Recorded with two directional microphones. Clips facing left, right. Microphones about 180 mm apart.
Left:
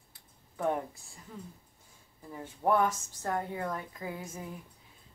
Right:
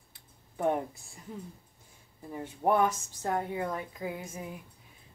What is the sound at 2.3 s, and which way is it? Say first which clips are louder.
Speech: right 1 dB; 15° right (ahead or behind).